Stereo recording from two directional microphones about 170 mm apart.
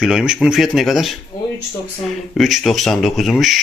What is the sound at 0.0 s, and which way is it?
Speech, 5° right (ahead or behind).